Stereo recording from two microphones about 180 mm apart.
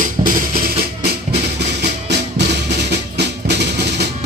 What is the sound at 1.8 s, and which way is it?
Music, 70° right (ahead or behind).